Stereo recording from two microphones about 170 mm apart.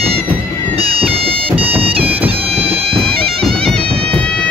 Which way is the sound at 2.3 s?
35° right (ahead or behind).